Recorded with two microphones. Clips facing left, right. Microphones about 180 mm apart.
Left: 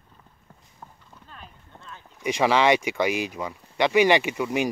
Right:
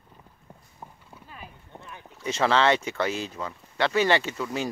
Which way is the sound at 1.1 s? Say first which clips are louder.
Right 2 dB; 10° right (ahead or behind).